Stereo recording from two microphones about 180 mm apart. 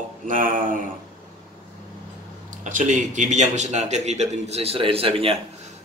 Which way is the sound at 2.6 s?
45° right (ahead or behind).